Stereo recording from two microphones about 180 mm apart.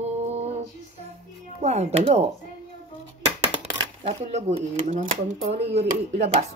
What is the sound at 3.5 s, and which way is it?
Speech, 35° right (ahead or behind).